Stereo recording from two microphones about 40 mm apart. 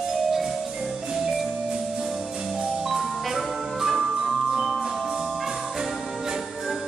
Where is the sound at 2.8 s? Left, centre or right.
Centre.